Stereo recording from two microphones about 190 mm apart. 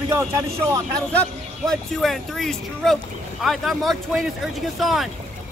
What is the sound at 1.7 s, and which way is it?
Speech, centre (ahead or behind).